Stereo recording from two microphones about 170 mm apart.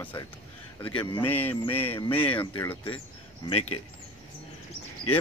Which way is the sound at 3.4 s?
40° left (ahead or behind).